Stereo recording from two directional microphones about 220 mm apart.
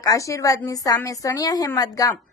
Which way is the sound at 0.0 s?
15° left (ahead or behind).